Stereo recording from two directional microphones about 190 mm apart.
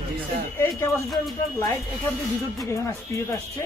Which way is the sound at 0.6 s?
15° left (ahead or behind).